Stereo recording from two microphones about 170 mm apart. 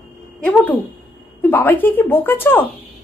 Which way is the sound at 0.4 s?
10° left (ahead or behind).